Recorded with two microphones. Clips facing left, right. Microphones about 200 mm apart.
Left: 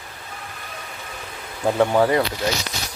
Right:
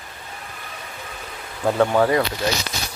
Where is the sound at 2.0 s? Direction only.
20° left (ahead or behind).